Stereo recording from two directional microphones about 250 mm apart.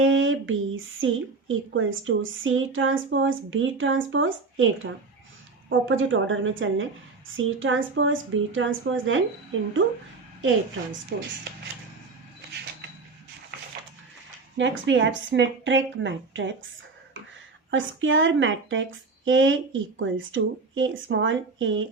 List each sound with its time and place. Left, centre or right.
0.0 s speech: right
11.1 s speech: right
13.5 s a sound: right
14.6 s speech: right
17.7 s speech: right